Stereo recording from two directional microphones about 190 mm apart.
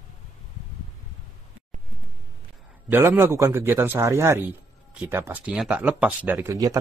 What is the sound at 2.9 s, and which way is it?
Speech, 10° right (ahead or behind).